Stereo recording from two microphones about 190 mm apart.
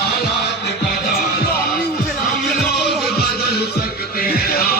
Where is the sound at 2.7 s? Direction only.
55° left (ahead or behind).